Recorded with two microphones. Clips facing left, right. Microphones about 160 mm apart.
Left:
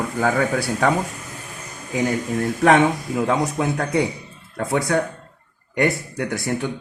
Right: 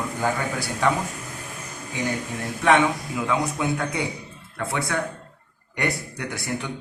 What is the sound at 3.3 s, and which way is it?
Speech, 40° left (ahead or behind).